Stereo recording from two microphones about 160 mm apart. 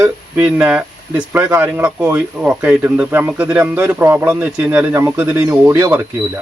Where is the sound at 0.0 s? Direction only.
5° right (ahead or behind).